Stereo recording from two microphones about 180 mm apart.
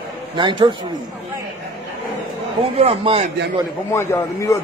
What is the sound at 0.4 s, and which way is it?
Speech, 25° right (ahead or behind).